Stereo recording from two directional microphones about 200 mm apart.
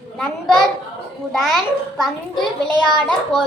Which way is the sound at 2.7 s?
20° right (ahead or behind).